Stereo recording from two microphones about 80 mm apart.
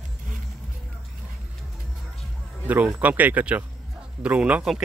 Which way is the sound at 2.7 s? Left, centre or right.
Centre.